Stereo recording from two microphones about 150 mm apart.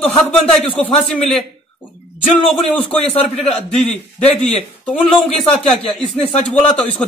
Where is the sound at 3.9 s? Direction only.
45° left (ahead or behind).